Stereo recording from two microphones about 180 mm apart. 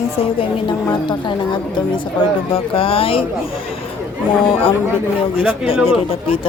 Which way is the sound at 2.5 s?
30° left (ahead or behind).